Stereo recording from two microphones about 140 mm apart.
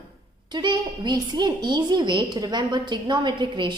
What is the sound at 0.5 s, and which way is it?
A woman's voice, 35° right (ahead or behind).